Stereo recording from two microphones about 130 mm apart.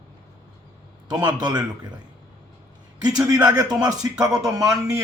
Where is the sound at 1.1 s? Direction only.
30° right (ahead or behind).